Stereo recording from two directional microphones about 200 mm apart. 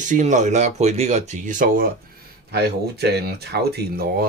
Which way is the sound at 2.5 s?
55° right (ahead or behind).